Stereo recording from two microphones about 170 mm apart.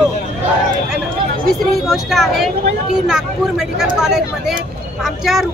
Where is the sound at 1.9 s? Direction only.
Centre (ahead or behind).